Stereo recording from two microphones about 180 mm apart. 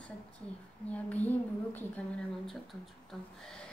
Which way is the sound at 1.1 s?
10° left (ahead or behind).